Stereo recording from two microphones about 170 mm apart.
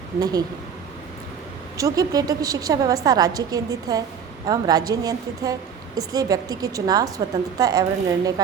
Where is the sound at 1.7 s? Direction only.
20° right (ahead or behind).